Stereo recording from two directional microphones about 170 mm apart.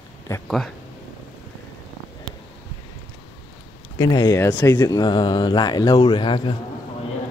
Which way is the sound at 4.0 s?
20° left (ahead or behind).